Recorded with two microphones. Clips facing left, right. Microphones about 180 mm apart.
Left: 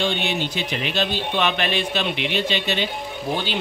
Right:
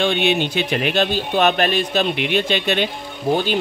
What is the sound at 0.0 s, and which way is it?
Speech, 60° right (ahead or behind).